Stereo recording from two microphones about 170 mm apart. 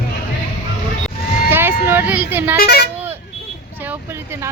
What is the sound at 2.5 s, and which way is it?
Speech, 70° left (ahead or behind).